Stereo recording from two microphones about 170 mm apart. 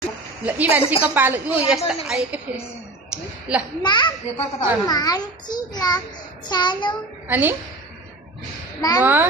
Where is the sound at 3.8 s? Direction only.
25° left (ahead or behind).